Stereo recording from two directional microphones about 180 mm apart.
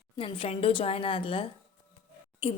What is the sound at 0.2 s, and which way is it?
A woman's voice, 30° left (ahead or behind).